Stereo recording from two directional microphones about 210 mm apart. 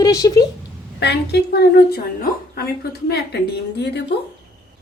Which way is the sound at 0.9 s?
50° left (ahead or behind).